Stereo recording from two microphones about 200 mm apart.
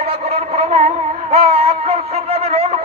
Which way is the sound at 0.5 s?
30° right (ahead or behind).